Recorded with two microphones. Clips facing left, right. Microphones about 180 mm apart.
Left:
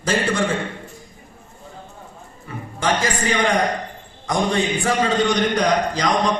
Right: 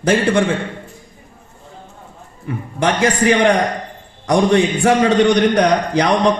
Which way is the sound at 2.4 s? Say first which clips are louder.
Right 4 dB; 60° right (ahead or behind).